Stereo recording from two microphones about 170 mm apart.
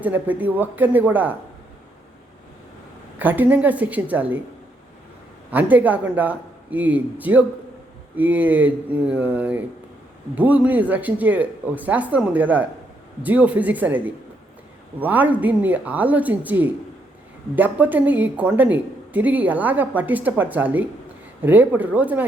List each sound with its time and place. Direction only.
0.0 s speech: 10° right (ahead or behind)
3.2 s speech: 10° right (ahead or behind)
5.5 s speech: 10° right (ahead or behind)